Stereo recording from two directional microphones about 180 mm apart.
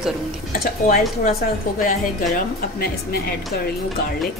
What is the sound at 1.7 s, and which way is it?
A woman's voice, 50° left (ahead or behind).